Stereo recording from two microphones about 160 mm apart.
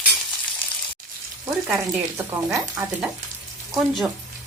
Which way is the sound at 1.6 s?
Centre (ahead or behind).